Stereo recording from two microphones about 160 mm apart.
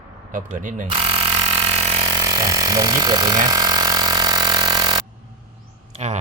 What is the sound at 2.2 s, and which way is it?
Vehicle, 20° right (ahead or behind).